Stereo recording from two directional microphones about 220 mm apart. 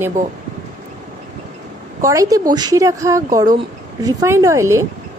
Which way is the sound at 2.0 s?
15° right (ahead or behind).